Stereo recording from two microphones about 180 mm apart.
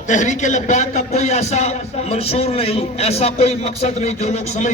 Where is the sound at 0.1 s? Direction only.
40° left (ahead or behind).